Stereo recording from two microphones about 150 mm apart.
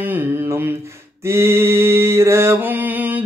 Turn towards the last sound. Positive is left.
turn(degrees=-10)  # may be behind; listen again after turning